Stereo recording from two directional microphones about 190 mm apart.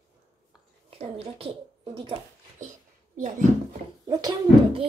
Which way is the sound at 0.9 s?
30° right (ahead or behind).